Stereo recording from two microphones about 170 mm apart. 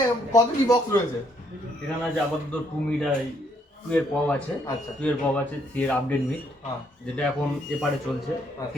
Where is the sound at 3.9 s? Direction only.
5° left (ahead or behind).